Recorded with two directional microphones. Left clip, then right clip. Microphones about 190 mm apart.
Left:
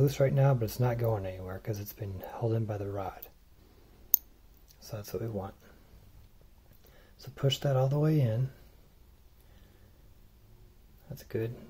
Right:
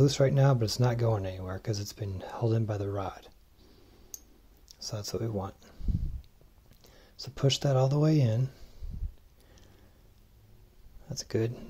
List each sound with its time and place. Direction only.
0.0 s speech: 30° right (ahead or behind)
4.7 s speech: 30° right (ahead or behind)
6.9 s speech: 30° right (ahead or behind)
11.1 s speech: 40° right (ahead or behind)